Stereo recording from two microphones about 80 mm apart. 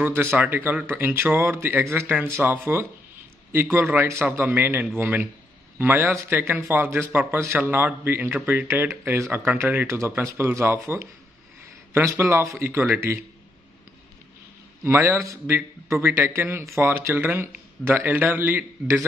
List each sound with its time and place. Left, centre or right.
0.0 s a man's voice: right
3.9 s a man's voice: right
10.2 s a man's voice: right
14.9 s a man's voice: right